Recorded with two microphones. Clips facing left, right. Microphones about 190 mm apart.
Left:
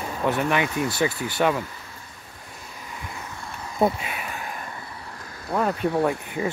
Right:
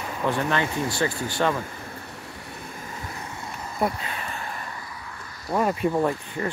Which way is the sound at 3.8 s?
20° left (ahead or behind).